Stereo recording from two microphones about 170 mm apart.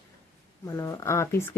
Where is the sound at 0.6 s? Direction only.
20° left (ahead or behind).